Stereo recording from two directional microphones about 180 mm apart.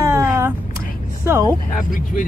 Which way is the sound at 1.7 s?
45° left (ahead or behind).